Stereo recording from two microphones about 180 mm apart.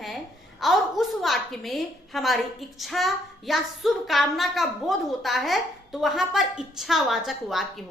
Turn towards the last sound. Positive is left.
turn(degrees=0)  # may be behind; listen again after turning